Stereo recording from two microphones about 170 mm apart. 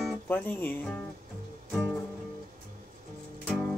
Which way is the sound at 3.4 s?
5° left (ahead or behind).